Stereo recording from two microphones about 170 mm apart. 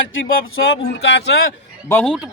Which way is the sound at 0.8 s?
85° left.